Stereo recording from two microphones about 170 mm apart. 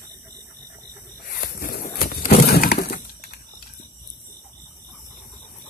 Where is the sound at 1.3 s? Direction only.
55° left (ahead or behind).